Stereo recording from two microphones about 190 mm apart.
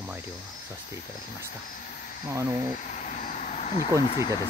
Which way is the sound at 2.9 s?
40° left (ahead or behind).